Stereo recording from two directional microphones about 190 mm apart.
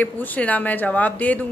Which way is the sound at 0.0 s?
10° left (ahead or behind).